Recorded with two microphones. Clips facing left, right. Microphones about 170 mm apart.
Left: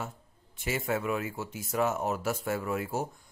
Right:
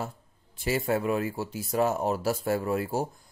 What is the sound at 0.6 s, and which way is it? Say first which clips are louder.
Speech: right 4 dB; 35° right (ahead or behind).